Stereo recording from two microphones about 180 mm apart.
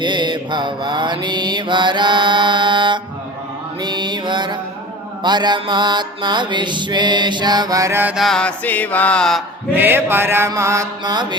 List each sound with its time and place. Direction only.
0.0 s music: 25° right (ahead or behind)
3.8 s mantra: 25° right (ahead or behind)
5.2 s music: 25° right (ahead or behind); by 9.4 s 5° left (ahead or behind)
9.7 s mantra: 10° right (ahead or behind)